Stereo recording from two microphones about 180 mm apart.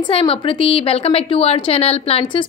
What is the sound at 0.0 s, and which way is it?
A woman's voice, 30° left (ahead or behind).